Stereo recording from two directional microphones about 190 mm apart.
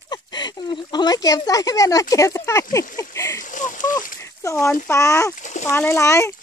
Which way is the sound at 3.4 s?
40° left (ahead or behind).